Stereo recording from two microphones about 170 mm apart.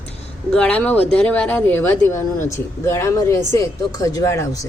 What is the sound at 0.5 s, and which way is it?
Speech, 5° left (ahead or behind).